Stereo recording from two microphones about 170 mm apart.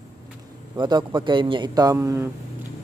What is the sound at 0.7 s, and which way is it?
A man's voice, 25° right (ahead or behind).